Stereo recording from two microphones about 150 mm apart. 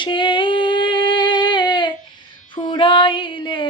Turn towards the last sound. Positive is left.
turn(degrees=35)  # may be behind; listen again after turning